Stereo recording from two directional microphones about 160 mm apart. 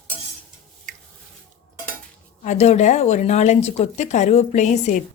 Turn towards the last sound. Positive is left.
turn(degrees=45)  # may be behind; listen again after turning